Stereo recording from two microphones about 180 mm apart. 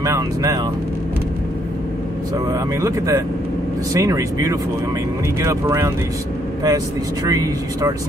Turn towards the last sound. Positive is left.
turn(degrees=-20)  # may be behind; listen again after turning